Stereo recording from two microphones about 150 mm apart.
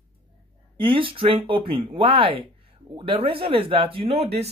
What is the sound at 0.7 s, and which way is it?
Speech, 35° right (ahead or behind).